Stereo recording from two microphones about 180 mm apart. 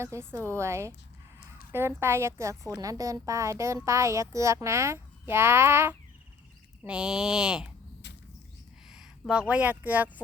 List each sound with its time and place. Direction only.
0.0 s a woman's voice: 15° right (ahead or behind)
8.0 s a sound: 75° left (ahead or behind)
8.9 s speech: 5° right (ahead or behind)